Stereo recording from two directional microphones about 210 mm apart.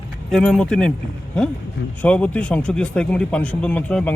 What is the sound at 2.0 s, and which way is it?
Speech, 5° left (ahead or behind).